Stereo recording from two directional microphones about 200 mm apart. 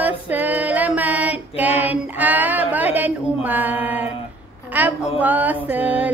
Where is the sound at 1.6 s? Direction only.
10° right (ahead or behind).